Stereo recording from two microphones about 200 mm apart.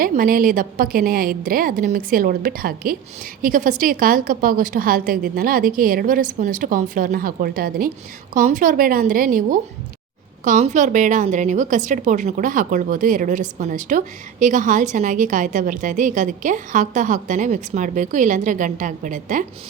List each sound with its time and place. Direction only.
0.0 s a woman's voice: 45° right (ahead or behind)